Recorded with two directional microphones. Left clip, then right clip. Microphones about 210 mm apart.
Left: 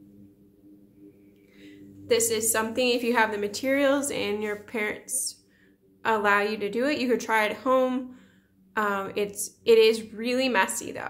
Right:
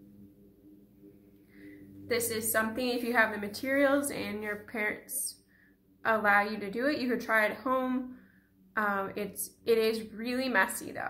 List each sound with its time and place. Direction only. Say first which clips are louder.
2.0 s a woman's voice: left 8 dB; 40° left (ahead or behind)